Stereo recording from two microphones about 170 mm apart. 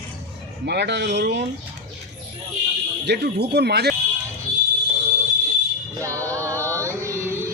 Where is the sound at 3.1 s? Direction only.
75° right (ahead or behind).